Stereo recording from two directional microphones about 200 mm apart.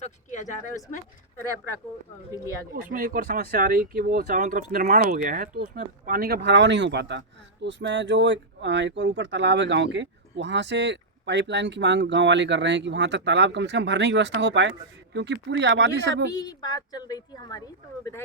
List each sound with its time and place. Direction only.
0.0 s speech: 35° left (ahead or behind)
2.9 s speech: 45° right (ahead or behind); by 16.2 s 60° right (ahead or behind)
16.3 s a woman's voice: 20° left (ahead or behind)